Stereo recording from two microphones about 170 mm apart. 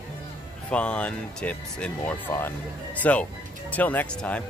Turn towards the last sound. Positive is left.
turn(degrees=5)  # may be behind; listen again after turning